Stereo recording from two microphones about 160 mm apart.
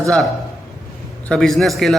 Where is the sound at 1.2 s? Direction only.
5° left (ahead or behind).